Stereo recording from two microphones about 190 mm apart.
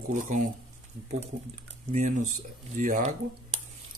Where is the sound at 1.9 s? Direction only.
40° right (ahead or behind).